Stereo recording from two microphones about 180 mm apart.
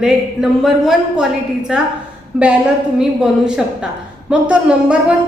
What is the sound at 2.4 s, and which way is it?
Speech, 5° right (ahead or behind).